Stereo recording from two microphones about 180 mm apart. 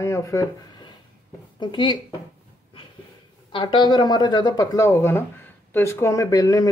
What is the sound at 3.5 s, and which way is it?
Speech, 25° left (ahead or behind).